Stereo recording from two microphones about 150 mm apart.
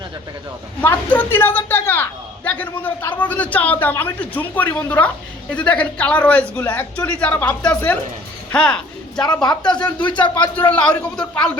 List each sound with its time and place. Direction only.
0.8 s a sound: 10° left (ahead or behind)
3.0 s a man's voice: 10° left (ahead or behind)
8.5 s speech: 5° left (ahead or behind)
9.2 s speech: 30° left (ahead or behind)
10.5 s a man's voice: 10° left (ahead or behind)